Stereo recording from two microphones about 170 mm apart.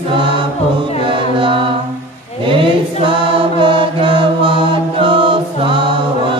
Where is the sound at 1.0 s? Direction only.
30° right (ahead or behind).